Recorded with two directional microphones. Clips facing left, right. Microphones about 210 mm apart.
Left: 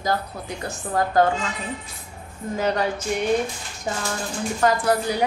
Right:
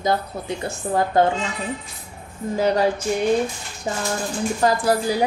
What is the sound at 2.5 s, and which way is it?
Speech, 35° right (ahead or behind).